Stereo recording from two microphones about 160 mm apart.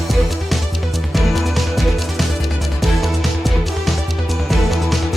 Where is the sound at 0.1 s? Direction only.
Centre (ahead or behind).